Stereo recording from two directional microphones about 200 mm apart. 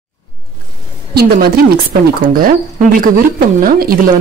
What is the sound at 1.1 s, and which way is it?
A woman's voice, 50° right (ahead or behind).